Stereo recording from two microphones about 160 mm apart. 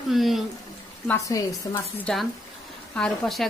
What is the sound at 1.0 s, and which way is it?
Speech, 20° left (ahead or behind).